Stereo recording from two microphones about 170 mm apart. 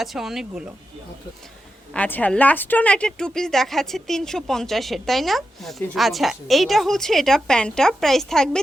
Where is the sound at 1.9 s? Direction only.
10° left (ahead or behind).